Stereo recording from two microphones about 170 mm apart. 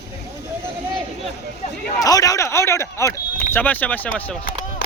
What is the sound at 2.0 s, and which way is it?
Speech, 20° left (ahead or behind).